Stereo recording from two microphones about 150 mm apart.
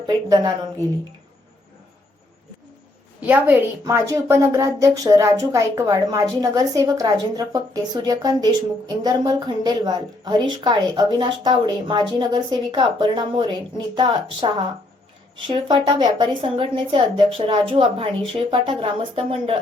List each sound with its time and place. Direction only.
0.1 s a woman's voice: 25° right (ahead or behind)
3.2 s a woman's voice: 10° right (ahead or behind); by 19.5 s 35° right (ahead or behind)